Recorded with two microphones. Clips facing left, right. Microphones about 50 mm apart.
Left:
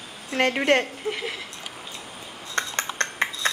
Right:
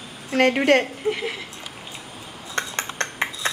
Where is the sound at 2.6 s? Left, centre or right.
Centre.